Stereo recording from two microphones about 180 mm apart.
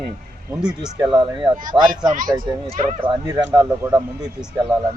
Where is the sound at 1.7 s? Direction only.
15° right (ahead or behind).